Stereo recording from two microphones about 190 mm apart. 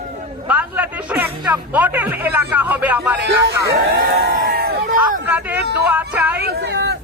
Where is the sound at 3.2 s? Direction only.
60° right (ahead or behind).